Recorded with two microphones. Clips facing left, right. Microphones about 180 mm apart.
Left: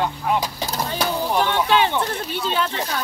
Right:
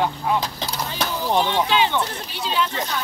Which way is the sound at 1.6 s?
55° left (ahead or behind).